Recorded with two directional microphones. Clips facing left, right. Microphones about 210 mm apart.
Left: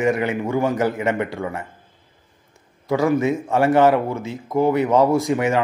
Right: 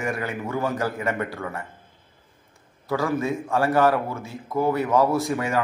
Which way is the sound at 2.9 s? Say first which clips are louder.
Left 6 dB; 20° left (ahead or behind).